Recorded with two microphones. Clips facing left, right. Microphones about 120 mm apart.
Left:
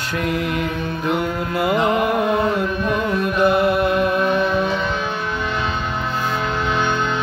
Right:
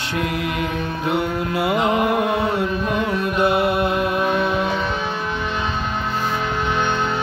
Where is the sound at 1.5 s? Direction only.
10° right (ahead or behind).